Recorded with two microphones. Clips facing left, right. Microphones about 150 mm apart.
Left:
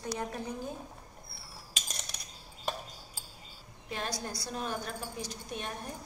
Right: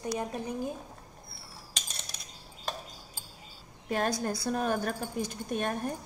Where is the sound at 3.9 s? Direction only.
50° right (ahead or behind).